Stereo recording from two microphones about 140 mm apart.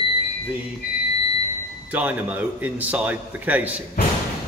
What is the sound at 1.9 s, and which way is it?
A man's voice, 10° right (ahead or behind).